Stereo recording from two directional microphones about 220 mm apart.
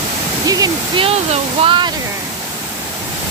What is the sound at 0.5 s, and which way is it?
Speech, 20° right (ahead or behind).